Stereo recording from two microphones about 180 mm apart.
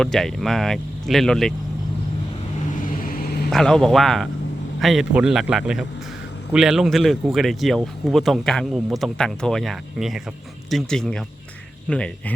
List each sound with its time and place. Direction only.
0.0 s speech: centre (ahead or behind)
2.7 s vehicle: 50° left (ahead or behind)
3.5 s speech: centre (ahead or behind)